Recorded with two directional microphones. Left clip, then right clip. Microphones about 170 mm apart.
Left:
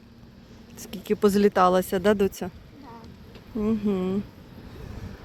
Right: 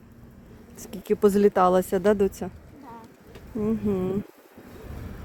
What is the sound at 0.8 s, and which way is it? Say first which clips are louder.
Speech: right 1 dB; 20° right (ahead or behind).